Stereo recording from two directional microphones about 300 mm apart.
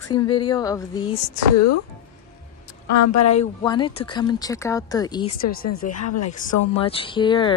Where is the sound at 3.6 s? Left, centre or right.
Centre.